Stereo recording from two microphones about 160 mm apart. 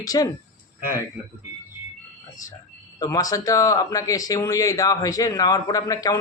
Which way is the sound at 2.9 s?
20° left (ahead or behind).